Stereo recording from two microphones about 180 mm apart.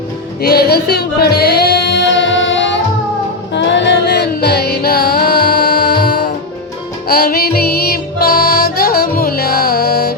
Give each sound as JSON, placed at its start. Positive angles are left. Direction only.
{"t": 0.4, "sound": "music", "side_deg": 60}
{"t": 3.5, "sound": "music", "side_deg": 75}